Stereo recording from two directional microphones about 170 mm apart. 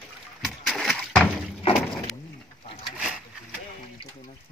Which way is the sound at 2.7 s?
35° left (ahead or behind).